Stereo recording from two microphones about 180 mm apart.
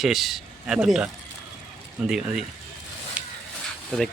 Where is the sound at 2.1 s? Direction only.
5° right (ahead or behind).